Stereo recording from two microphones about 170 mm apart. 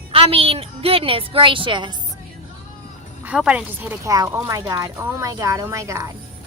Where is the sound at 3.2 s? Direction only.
5° right (ahead or behind).